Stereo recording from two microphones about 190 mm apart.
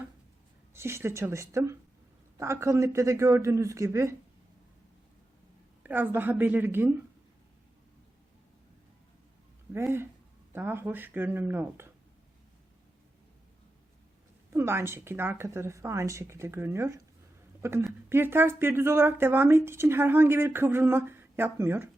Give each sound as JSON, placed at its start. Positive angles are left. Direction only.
{"t": 0.7, "sound": "speech", "side_deg": -15}
{"t": 5.8, "sound": "speech", "side_deg": -10}
{"t": 9.7, "sound": "speech", "side_deg": -10}
{"t": 14.5, "sound": "a woman's voice", "side_deg": -15}